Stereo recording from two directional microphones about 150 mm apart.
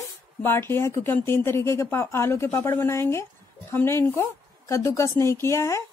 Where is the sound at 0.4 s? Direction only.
15° left (ahead or behind).